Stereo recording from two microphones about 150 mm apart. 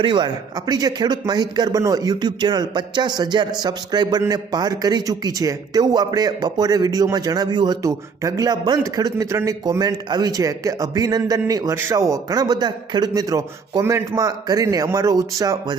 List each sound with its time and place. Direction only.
0.0 s a man's voice: 30° right (ahead or behind)